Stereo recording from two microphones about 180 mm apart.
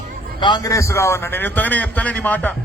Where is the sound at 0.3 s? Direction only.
25° left (ahead or behind).